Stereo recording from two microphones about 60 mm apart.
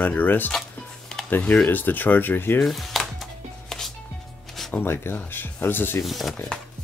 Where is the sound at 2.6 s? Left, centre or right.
Centre.